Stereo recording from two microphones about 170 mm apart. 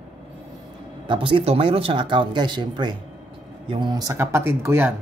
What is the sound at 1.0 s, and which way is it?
Speech, 30° right (ahead or behind).